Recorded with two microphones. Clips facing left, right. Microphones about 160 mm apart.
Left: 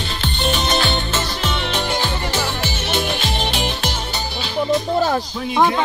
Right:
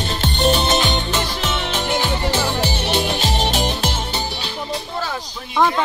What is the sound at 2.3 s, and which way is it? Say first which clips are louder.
Music: right 2 dB; 30° right (ahead or behind).